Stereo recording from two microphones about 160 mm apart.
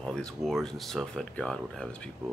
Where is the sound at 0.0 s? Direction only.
5° left (ahead or behind).